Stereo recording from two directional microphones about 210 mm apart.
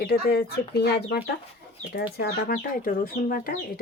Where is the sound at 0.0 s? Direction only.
50° left (ahead or behind).